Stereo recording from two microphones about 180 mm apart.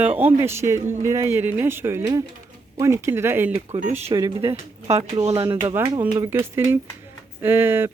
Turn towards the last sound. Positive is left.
turn(degrees=-10)  # may be behind; listen again after turning